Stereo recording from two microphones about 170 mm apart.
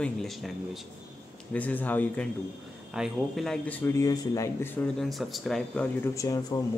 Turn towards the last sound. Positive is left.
turn(degrees=20)  # may be behind; listen again after turning